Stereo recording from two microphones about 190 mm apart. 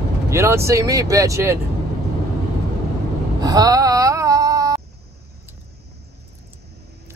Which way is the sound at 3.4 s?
20° right (ahead or behind).